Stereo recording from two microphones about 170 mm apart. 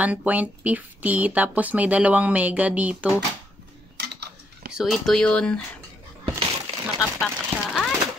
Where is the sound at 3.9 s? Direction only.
75° right (ahead or behind).